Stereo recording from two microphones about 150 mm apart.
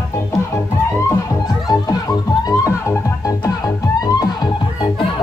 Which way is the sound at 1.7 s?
25° left (ahead or behind).